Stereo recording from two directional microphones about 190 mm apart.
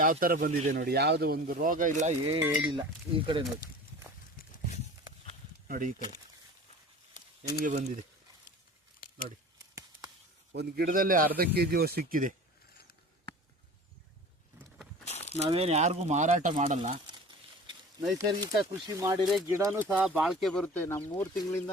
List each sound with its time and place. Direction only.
0.0 s speech: 45° right (ahead or behind)
0.8 s speech: 55° right (ahead or behind); by 2.3 s 40° right (ahead or behind)
2.4 s speech: 5° right (ahead or behind)
2.7 s speech: 25° right (ahead or behind)
4.4 s a sound: 45° left (ahead or behind)
5.6 s speech: 45° right (ahead or behind)
7.2 s a sound: 40° left (ahead or behind)
7.6 s speech: 40° right (ahead or behind)
9.0 s a sound: 50° left (ahead or behind)
10.5 s speech: 60° right (ahead or behind)
15.0 s a sound: 35° left (ahead or behind)
15.4 s speech: 30° right (ahead or behind)
18.2 s speech: 20° right (ahead or behind)
19.9 s speech: 5° right (ahead or behind); by 21.6 s 15° left (ahead or behind)